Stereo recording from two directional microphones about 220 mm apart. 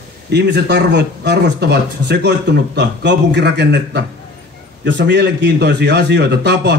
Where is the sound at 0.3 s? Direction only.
50° right (ahead or behind).